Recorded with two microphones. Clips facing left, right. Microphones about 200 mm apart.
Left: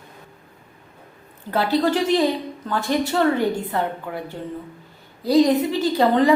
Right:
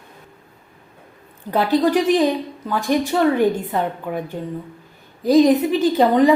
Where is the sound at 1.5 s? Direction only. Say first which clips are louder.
Right 3 dB; 20° right (ahead or behind).